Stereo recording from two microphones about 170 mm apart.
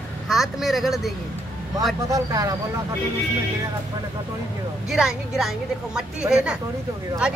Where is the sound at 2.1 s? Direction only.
20° right (ahead or behind).